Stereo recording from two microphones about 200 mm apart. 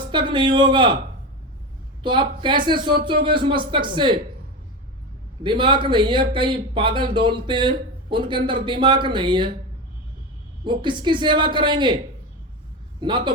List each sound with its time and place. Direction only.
0.1 s a man's voice: 25° right (ahead or behind)
2.0 s a man's voice: 25° right (ahead or behind)
5.4 s a man's voice: 25° right (ahead or behind)
10.6 s a man's voice: 25° right (ahead or behind)
13.0 s a man's voice: 25° right (ahead or behind)